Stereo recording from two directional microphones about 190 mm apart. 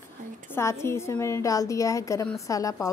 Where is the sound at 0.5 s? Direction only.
15° left (ahead or behind).